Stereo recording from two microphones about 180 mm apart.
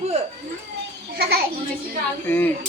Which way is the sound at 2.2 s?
10° left (ahead or behind).